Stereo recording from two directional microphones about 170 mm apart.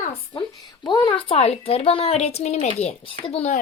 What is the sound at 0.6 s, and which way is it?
A woman's voice, 25° left (ahead or behind).